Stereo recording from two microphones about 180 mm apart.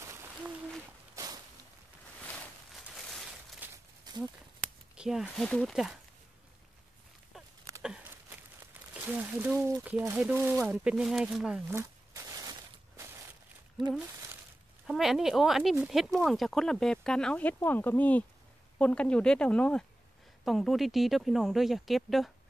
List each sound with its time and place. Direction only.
0.0 s owl: 15° right (ahead or behind)
1.1 s walk: 20° right (ahead or behind)
3.7 s walk: 20° right (ahead or behind)
4.9 s speech: 5° right (ahead or behind)
7.3 s a sound: 5° right (ahead or behind)
8.9 s speech: 10° right (ahead or behind)
14.9 s speech: centre (ahead or behind)